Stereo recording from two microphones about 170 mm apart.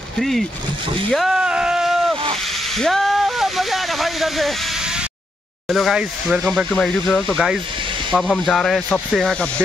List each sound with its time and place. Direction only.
0.2 s speech: centre (ahead or behind)
1.1 s a sound: centre (ahead or behind)
5.7 s speech: centre (ahead or behind)